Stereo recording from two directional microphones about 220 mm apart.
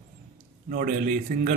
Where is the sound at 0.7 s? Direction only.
40° right (ahead or behind).